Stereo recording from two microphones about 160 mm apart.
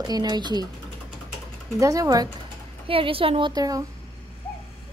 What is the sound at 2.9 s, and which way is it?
Speech, 35° right (ahead or behind).